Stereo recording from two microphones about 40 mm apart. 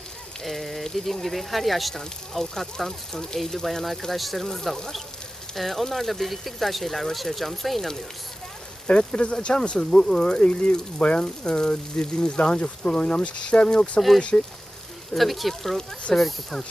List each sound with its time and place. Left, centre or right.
0.4 s speech: centre
8.9 s speech: left
15.1 s speech: centre